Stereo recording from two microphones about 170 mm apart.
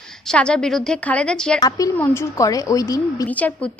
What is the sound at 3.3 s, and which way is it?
Speech, 10° left (ahead or behind).